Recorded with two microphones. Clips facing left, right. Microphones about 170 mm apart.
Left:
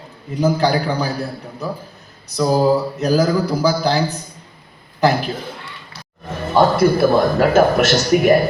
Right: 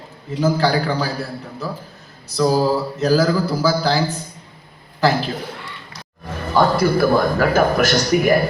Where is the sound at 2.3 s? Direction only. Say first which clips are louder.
Left 2 dB; 15° left (ahead or behind).